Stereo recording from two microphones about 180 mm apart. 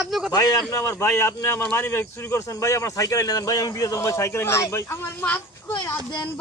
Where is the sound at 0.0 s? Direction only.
Centre (ahead or behind).